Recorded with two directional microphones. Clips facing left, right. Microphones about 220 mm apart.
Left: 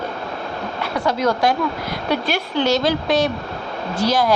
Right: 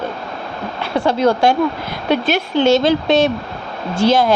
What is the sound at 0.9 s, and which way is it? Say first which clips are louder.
Speech: right 5 dB; 30° right (ahead or behind).